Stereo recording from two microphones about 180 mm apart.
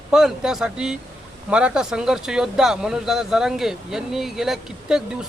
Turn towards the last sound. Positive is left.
turn(degrees=-5)  # may be behind; listen again after turning